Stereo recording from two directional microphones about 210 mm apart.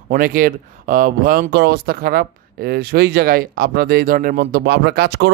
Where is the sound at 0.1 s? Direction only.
40° right (ahead or behind).